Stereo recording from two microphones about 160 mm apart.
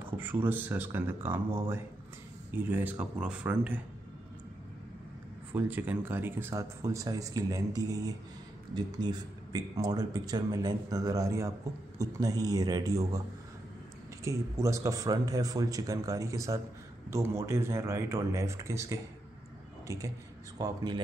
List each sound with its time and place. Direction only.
0.0 s speech: 10° right (ahead or behind)
5.5 s speech: 10° right (ahead or behind)
14.2 s speech: 20° right (ahead or behind)
20.5 s speech: 25° right (ahead or behind)